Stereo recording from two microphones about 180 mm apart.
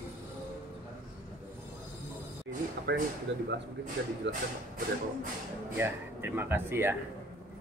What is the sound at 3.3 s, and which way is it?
Speech, 90° right.